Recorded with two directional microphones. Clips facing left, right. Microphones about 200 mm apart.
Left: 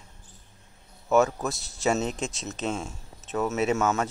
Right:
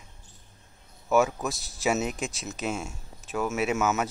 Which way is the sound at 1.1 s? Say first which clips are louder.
Left 1 dB; centre (ahead or behind).